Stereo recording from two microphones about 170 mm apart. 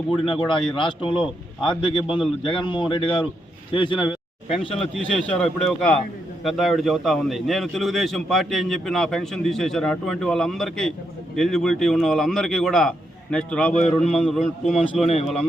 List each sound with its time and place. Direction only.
0.3 s a man's voice: 30° left (ahead or behind)
4.6 s a man's voice: 5° left (ahead or behind)
14.4 s speech: 35° left (ahead or behind)